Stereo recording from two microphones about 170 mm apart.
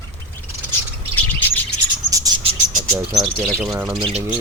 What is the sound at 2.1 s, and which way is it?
Bird, 20° right (ahead or behind).